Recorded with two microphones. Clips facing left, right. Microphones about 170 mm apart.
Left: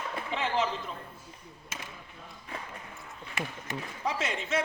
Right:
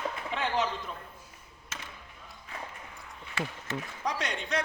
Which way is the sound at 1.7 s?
10° left (ahead or behind).